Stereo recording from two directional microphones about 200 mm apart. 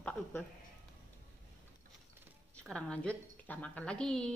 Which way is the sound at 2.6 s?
5° left (ahead or behind).